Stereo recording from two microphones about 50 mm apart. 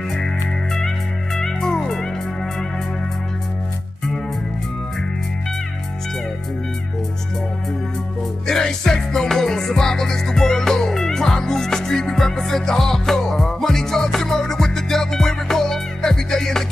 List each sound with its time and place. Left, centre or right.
0.7 s music: centre
8.5 s music: centre